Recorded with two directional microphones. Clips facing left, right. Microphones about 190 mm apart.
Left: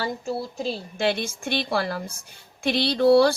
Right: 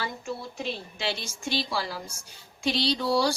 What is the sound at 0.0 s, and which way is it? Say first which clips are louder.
A woman's voice: left 6 dB; 35° left (ahead or behind).